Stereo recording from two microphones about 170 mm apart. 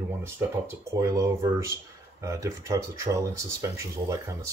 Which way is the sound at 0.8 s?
15° right (ahead or behind).